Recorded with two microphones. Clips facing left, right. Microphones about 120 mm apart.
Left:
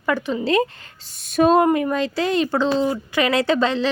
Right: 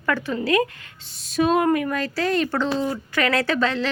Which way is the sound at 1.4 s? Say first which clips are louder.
Left 4 dB; 40° left (ahead or behind).